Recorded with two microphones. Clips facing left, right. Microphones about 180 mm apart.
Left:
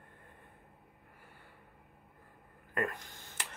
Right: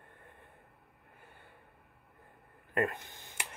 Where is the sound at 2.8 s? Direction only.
20° right (ahead or behind).